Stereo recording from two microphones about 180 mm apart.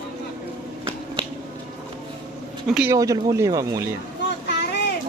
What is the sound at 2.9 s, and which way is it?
Speech, 20° right (ahead or behind).